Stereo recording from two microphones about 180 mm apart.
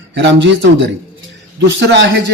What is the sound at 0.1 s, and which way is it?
A man's voice, 80° right.